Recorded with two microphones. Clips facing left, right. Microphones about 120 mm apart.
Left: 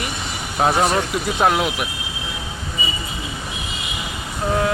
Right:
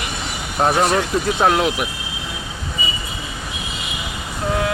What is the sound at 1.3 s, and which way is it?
Speech, 5° left (ahead or behind).